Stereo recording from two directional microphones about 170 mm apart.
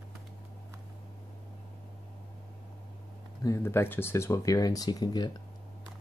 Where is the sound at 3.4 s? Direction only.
15° left (ahead or behind).